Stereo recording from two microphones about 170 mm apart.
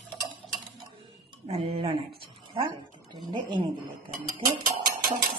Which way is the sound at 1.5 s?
35° right (ahead or behind).